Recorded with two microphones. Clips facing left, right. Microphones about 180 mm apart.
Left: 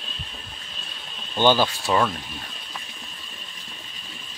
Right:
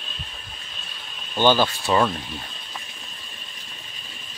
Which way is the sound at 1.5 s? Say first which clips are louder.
Right 1 dB; 10° left (ahead or behind).